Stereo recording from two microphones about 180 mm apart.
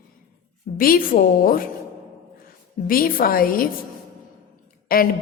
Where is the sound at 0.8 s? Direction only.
55° left (ahead or behind).